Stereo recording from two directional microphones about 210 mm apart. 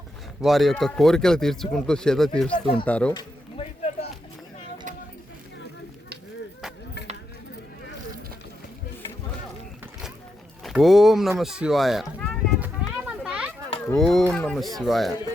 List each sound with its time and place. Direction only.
0.4 s speech: centre (ahead or behind)
3.2 s a sound: 30° left (ahead or behind)
10.6 s speech: centre (ahead or behind)
12.5 s children playing: 10° right (ahead or behind)
13.8 s speech: centre (ahead or behind)